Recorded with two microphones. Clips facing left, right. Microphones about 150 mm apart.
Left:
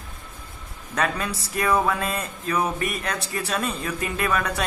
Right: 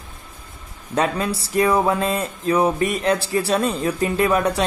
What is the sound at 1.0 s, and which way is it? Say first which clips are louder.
A man's voice: right 5 dB; 30° right (ahead or behind).